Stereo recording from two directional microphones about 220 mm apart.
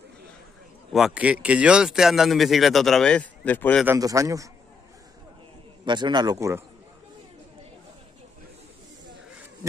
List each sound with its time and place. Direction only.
0.9 s speech: 5° right (ahead or behind)
3.8 s speech: 15° right (ahead or behind)
5.9 s a man's voice: 20° right (ahead or behind)